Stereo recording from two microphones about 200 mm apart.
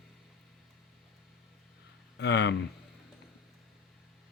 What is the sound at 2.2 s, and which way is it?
Speech, 60° left (ahead or behind).